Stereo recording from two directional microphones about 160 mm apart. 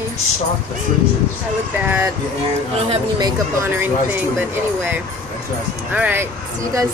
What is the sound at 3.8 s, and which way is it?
Speech, 10° right (ahead or behind).